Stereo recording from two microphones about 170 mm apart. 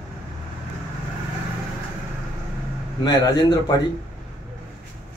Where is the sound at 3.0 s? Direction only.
25° left (ahead or behind).